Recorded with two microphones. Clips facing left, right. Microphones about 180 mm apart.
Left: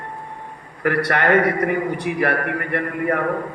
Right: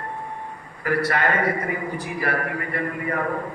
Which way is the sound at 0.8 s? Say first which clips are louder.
Left 3 dB; 65° left (ahead or behind).